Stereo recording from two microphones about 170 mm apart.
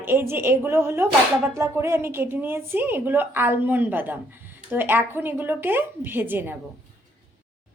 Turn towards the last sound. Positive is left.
turn(degrees=-10)  # may be behind; listen again after turning